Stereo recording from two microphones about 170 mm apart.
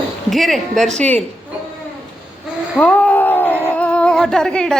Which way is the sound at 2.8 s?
10° left (ahead or behind).